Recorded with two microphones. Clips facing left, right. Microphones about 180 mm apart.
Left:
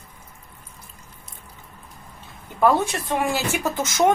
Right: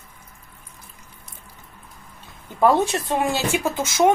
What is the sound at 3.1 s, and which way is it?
Speech, 20° right (ahead or behind).